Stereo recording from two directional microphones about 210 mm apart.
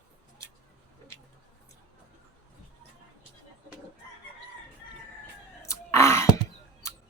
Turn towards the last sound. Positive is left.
turn(degrees=15)  # may be behind; listen again after turning